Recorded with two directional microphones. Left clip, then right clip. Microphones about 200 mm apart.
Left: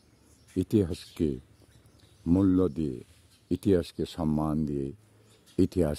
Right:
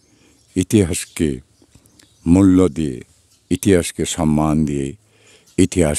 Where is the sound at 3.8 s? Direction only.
45° right (ahead or behind).